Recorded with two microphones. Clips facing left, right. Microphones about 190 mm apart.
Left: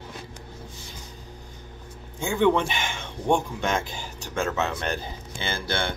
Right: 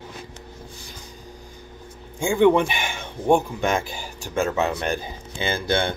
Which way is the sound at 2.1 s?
10° right (ahead or behind).